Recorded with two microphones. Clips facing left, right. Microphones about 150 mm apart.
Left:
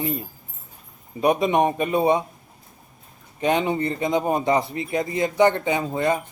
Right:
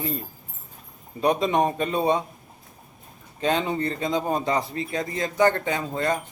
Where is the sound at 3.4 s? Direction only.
15° left (ahead or behind).